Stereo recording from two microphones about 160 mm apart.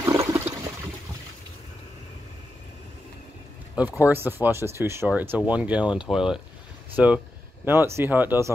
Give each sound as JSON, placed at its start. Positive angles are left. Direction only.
{"t": 0.0, "sound": "toilet flush", "side_deg": -20}
{"t": 4.0, "sound": "speech", "side_deg": -15}